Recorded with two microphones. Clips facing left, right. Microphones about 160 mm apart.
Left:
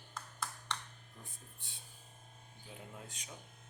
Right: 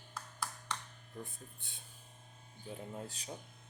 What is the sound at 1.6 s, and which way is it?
Speech, 55° right (ahead or behind).